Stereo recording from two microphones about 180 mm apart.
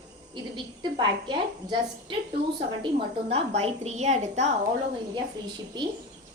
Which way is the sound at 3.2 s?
35° right (ahead or behind).